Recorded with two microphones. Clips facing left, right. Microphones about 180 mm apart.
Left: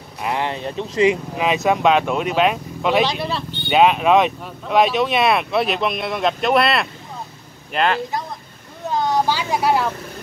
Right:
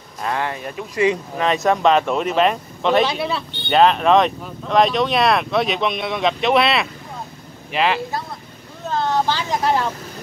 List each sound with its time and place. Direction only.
0.2 s speech: 20° left (ahead or behind)
1.3 s speech: 5° left (ahead or behind)
8.8 s vehicle: 15° left (ahead or behind)